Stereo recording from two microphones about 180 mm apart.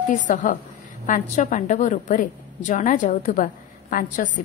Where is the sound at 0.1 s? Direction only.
45° left (ahead or behind).